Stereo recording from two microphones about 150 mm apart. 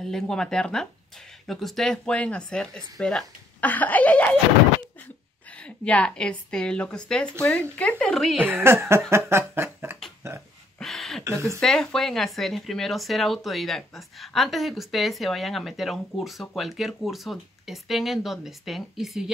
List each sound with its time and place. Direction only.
0.0 s speech: 5° left (ahead or behind)
5.6 s speech: 10° left (ahead or behind)
8.6 s a sound: 15° right (ahead or behind)
9.1 s snicker: 15° right (ahead or behind)
10.8 s a sound: centre (ahead or behind)
11.6 s speech: 5° left (ahead or behind)